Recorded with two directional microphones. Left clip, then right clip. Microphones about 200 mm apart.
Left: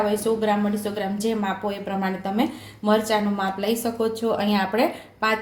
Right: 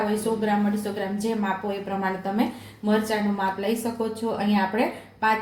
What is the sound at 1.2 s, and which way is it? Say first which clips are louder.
A woman's voice: left 2 dB; 45° left (ahead or behind).